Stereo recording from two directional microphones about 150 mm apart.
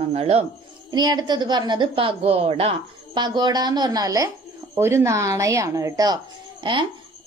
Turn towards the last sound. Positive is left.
turn(degrees=-30)  # may be behind; listen again after turning